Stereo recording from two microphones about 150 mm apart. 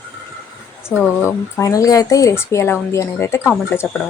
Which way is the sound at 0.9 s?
10° left (ahead or behind).